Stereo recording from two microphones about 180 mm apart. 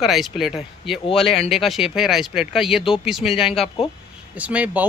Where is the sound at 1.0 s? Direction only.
30° left (ahead or behind).